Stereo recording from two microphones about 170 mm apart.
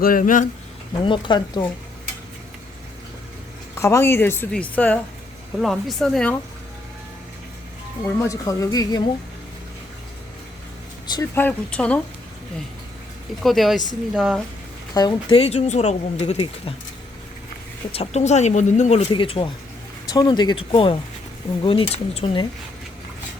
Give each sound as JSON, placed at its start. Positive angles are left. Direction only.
{"t": 0.0, "sound": "speech", "side_deg": 55}
{"t": 1.0, "sound": "speech", "side_deg": 30}
{"t": 3.8, "sound": "speech", "side_deg": 15}
{"t": 8.0, "sound": "speech", "side_deg": 15}
{"t": 11.1, "sound": "speech", "side_deg": 15}
{"t": 13.4, "sound": "speech", "side_deg": 0}
{"t": 14.9, "sound": "speech", "side_deg": 25}
{"t": 15.4, "sound": "speech", "side_deg": 40}
{"t": 17.9, "sound": "speech", "side_deg": 40}